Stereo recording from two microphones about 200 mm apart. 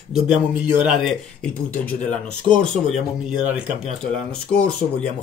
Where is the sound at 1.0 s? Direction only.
5° left (ahead or behind).